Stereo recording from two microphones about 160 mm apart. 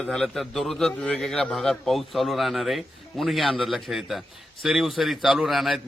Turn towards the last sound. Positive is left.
turn(degrees=0)  # may be behind; listen again after turning